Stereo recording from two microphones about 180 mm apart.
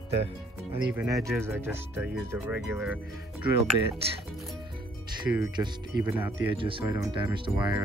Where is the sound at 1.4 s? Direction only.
15° right (ahead or behind).